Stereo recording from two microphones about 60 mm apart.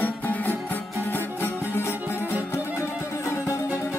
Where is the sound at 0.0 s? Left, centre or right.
Left.